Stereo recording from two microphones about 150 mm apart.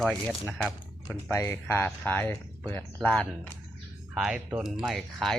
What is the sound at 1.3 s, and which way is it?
Speech, 15° left (ahead or behind).